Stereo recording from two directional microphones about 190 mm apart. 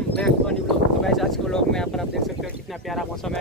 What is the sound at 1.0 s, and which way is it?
Boat, centre (ahead or behind).